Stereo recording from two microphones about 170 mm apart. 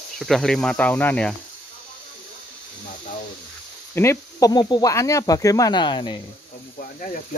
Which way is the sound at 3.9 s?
15° left (ahead or behind).